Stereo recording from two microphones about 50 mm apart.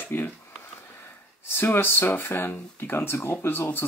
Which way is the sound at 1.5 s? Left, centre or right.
Left.